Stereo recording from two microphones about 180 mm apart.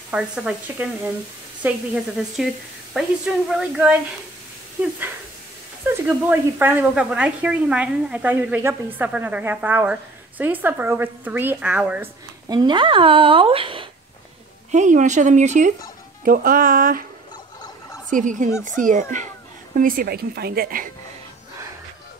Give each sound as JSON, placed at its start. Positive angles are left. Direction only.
{"t": 0.1, "sound": "speech", "side_deg": -5}
{"t": 2.1, "sound": "speech", "side_deg": 0}
{"t": 5.9, "sound": "speech", "side_deg": -10}
{"t": 12.4, "sound": "speech", "side_deg": -25}
{"t": 14.7, "sound": "a woman's voice", "side_deg": -40}
{"t": 18.1, "sound": "a woman's voice", "side_deg": -45}